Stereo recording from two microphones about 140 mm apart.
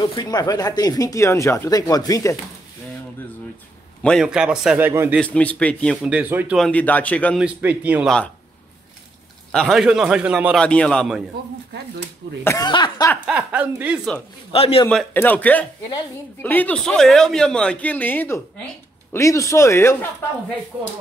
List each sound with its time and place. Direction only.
0.0 s speech: 30° left (ahead or behind)
4.0 s a man's voice: centre (ahead or behind); by 5.1 s 15° right (ahead or behind)
5.2 s speech: 10° left (ahead or behind)
6.0 s a man's voice: 10° right (ahead or behind)
6.6 s speech: 10° left (ahead or behind)
7.3 s a man's voice: 10° right (ahead or behind)
9.5 s a man's voice: 5° left (ahead or behind)
10.6 s speech: 10° left (ahead or behind)
12.6 s speech: 35° left (ahead or behind)
13.4 s a man's voice: 10° right (ahead or behind)
14.5 s a man's voice: 45° left (ahead or behind)
14.9 s speech: 10° left (ahead or behind)